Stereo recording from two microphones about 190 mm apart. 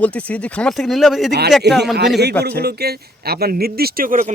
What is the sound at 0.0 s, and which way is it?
Speech, 5° left (ahead or behind).